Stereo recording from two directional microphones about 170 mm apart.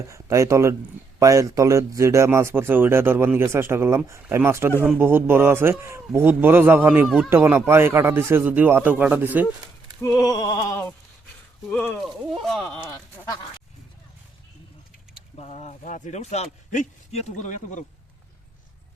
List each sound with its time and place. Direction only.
0.1 s speech: 15° right (ahead or behind)
10.0 s a sound: 20° left (ahead or behind)
11.7 s speech: 5° left (ahead or behind)
15.4 s speech: 40° left (ahead or behind)